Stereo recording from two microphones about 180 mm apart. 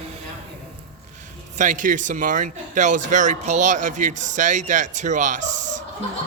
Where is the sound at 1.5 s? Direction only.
45° right (ahead or behind).